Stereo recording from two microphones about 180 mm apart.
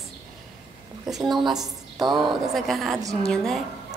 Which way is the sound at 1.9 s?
25° right (ahead or behind).